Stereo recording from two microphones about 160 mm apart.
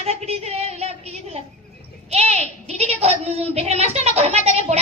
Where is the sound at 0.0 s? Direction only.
40° right (ahead or behind).